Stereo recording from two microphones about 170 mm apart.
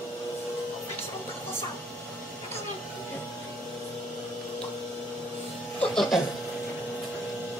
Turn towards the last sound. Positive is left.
turn(degrees=0)  # may be behind; listen again after turning